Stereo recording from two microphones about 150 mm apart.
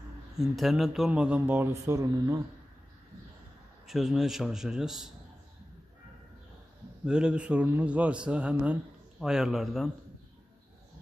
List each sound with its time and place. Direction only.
0.4 s speech: centre (ahead or behind); by 2.4 s 20° right (ahead or behind)
3.8 s a man's voice: centre (ahead or behind)
7.1 s a man's voice: 5° right (ahead or behind)